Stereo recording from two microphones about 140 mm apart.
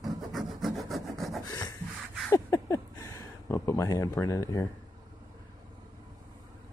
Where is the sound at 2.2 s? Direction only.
20° left (ahead or behind).